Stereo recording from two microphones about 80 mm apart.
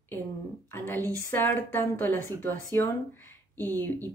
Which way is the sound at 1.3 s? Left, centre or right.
Left.